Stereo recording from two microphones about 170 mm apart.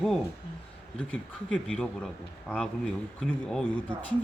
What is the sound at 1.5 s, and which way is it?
Speech, 5° left (ahead or behind).